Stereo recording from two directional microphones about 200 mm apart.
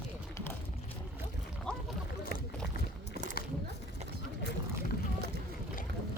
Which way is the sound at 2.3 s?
50° left (ahead or behind).